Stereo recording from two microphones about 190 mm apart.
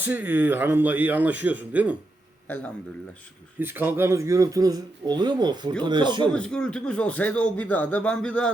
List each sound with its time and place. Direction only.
0.0 s speech: 10° right (ahead or behind)
3.6 s a man's voice: 10° right (ahead or behind)
6.3 s speech: 5° left (ahead or behind)